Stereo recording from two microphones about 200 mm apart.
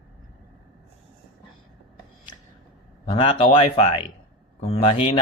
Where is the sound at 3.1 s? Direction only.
25° left (ahead or behind).